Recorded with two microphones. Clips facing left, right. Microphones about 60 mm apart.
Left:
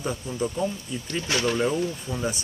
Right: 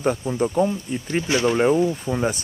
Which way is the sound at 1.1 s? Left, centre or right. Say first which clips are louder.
Right 5 dB; centre.